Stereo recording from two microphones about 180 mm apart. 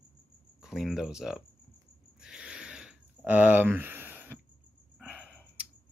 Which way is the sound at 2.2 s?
5° right (ahead or behind).